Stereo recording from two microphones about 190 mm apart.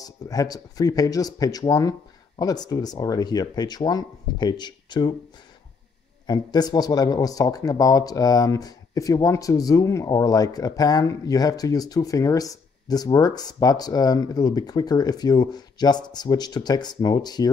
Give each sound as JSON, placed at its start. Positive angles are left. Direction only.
{"t": 0.0, "sound": "speech", "side_deg": 20}
{"t": 6.2, "sound": "speech", "side_deg": 20}